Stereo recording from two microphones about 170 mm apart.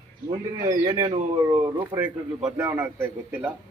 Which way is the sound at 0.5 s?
20° right (ahead or behind).